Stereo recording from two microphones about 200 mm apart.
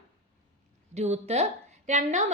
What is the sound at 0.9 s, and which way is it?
A woman's voice, 35° right (ahead or behind).